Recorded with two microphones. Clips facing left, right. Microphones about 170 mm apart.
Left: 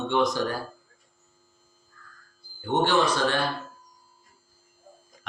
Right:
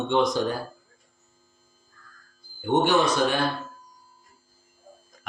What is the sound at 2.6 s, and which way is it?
Speech, 15° right (ahead or behind).